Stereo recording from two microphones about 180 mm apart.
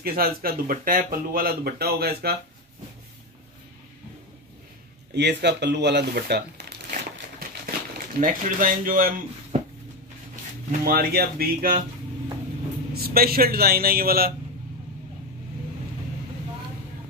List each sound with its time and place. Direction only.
0.0 s speech: 55° right (ahead or behind)
5.1 s speech: 70° right (ahead or behind)
8.1 s speech: 50° right (ahead or behind)
10.8 s speech: 55° right (ahead or behind)
12.9 s speech: 55° right (ahead or behind)